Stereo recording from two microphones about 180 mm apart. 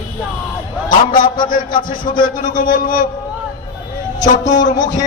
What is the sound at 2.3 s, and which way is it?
Speech, 50° left (ahead or behind).